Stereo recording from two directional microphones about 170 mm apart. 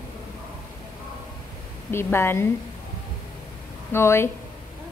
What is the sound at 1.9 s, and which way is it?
Speech, 15° left (ahead or behind).